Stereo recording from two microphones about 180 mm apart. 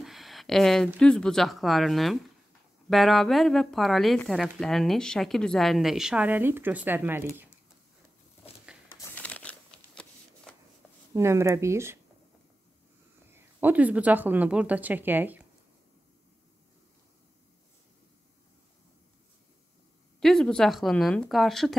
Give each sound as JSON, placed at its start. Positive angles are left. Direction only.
{"t": 0.0, "sound": "speech", "side_deg": 0}
{"t": 8.7, "sound": "a sound", "side_deg": -5}
{"t": 9.1, "sound": "a sound", "side_deg": 5}
{"t": 11.1, "sound": "speech", "side_deg": -15}
{"t": 13.3, "sound": "speech", "side_deg": -10}
{"t": 20.2, "sound": "speech", "side_deg": 0}